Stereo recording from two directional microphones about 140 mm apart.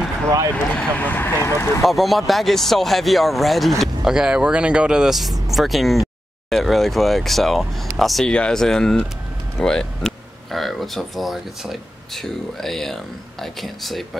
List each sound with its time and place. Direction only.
0.7 s speech: 10° left (ahead or behind)
1.9 s speech: centre (ahead or behind)